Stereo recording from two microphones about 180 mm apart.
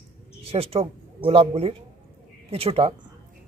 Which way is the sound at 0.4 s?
35° right (ahead or behind).